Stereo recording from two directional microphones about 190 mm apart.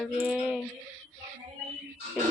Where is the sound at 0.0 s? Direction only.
Centre (ahead or behind).